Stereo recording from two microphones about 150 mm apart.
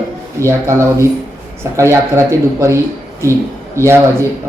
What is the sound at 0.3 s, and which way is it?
Speech, 20° right (ahead or behind).